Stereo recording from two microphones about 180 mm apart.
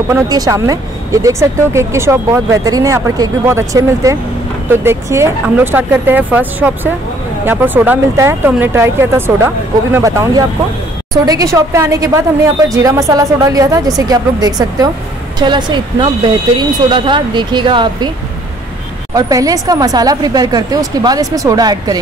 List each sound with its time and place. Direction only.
0.1 s a woman's voice: 20° right (ahead or behind)
19.1 s a woman's voice: 20° right (ahead or behind)